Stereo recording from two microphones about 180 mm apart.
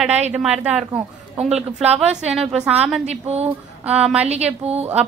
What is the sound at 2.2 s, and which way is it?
Speech, 5° right (ahead or behind).